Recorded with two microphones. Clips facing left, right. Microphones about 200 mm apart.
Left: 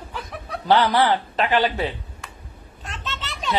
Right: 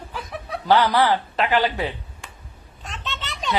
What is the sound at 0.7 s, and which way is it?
A man's voice, 25° left (ahead or behind).